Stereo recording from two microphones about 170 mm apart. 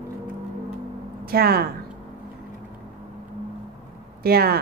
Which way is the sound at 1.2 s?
65° right (ahead or behind).